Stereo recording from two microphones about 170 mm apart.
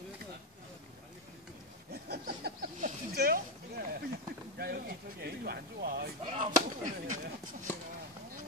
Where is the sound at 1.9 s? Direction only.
70° right (ahead or behind).